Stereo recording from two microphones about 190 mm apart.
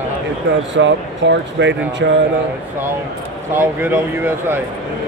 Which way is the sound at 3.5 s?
10° right (ahead or behind).